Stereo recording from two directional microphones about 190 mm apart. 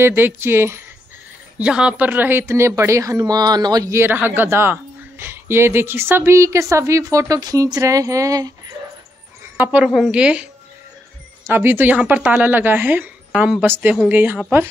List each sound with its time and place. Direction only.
0.0 s a woman's voice: 10° right (ahead or behind)